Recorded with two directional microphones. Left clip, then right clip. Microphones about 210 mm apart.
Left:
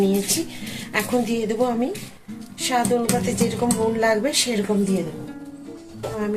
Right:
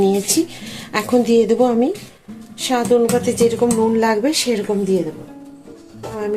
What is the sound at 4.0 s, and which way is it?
Speech, 45° right (ahead or behind).